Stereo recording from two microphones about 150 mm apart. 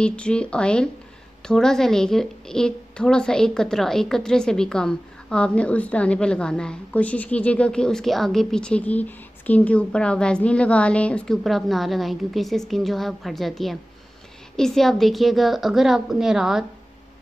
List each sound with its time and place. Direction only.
0.0 s a woman's voice: 5° left (ahead or behind)